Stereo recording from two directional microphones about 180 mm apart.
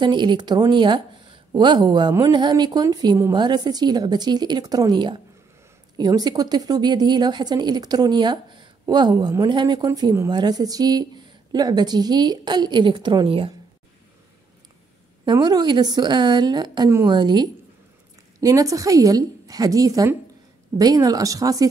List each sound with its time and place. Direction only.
0.0 s a woman's voice: 25° right (ahead or behind)
15.2 s a woman's voice: 20° right (ahead or behind)